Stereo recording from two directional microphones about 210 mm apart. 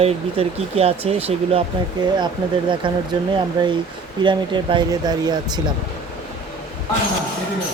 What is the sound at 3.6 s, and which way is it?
Speech, 20° right (ahead or behind).